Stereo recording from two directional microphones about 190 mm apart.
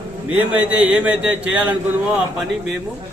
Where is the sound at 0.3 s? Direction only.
10° right (ahead or behind).